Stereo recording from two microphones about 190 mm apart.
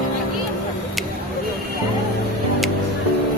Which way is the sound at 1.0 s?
Centre (ahead or behind).